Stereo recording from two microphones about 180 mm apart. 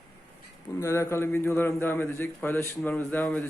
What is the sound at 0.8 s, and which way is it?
A man's voice, 15° left (ahead or behind).